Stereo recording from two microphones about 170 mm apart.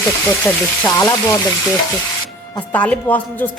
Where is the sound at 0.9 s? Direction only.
15° left (ahead or behind).